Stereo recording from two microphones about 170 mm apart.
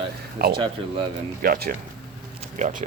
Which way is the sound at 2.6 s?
50° right (ahead or behind).